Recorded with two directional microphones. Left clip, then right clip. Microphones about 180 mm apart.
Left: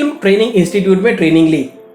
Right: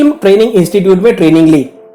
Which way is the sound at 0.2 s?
40° right (ahead or behind).